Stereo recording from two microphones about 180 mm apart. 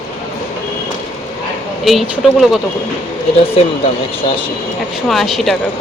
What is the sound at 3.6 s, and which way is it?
Speech, 35° left (ahead or behind).